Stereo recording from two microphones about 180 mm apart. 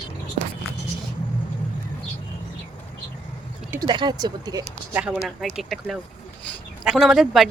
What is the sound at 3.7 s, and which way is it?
Speech, 20° right (ahead or behind).